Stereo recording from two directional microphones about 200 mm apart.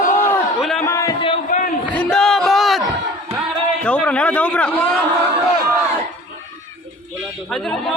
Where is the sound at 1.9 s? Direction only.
Centre (ahead or behind).